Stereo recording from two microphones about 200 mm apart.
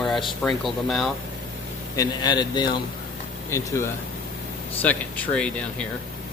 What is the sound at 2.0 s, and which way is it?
Speech, 20° left (ahead or behind).